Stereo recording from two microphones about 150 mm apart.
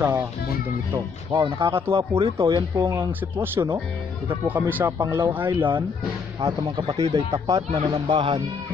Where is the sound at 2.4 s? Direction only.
25° right (ahead or behind).